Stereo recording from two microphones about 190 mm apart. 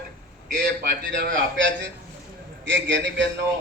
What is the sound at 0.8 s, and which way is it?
A man's voice, 55° right (ahead or behind).